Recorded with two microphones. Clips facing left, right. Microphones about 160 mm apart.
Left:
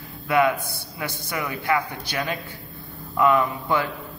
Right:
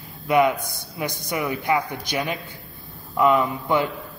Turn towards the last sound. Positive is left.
turn(degrees=-20)  # may be behind; listen again after turning